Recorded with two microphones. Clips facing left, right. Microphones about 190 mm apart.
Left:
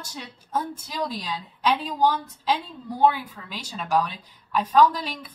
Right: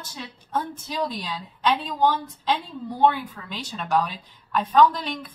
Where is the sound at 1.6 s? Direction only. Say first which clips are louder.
Even; 5° left (ahead or behind).